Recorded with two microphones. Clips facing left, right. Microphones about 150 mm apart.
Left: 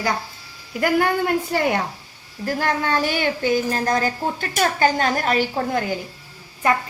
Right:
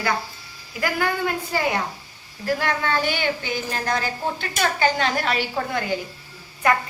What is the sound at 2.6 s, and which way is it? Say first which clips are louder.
Speech: left 5 dB; 35° left (ahead or behind).